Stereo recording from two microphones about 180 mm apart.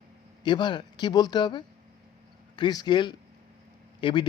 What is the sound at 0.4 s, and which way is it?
Speech, 25° left (ahead or behind).